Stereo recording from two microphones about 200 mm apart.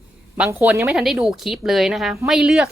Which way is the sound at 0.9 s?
Centre (ahead or behind).